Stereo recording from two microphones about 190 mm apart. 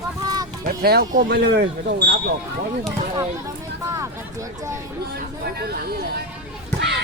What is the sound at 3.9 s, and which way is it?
Speech, 15° right (ahead or behind).